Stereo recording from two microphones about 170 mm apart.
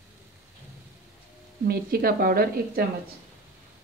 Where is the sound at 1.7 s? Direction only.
60° right (ahead or behind).